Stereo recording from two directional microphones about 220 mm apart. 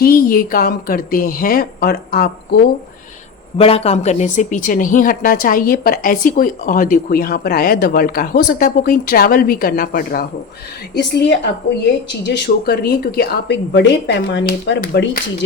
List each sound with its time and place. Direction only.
0.0 s speech: 40° left (ahead or behind)
3.6 s a woman's voice: 25° left (ahead or behind); by 15.2 s 45° left (ahead or behind)